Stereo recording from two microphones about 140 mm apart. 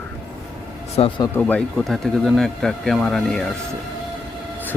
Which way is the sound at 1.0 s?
45° left (ahead or behind).